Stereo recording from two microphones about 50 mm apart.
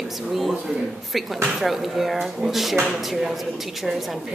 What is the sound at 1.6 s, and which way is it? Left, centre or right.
A woman's voice, centre.